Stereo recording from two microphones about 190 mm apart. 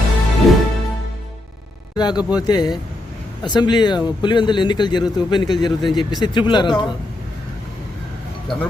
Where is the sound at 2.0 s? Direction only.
20° left (ahead or behind).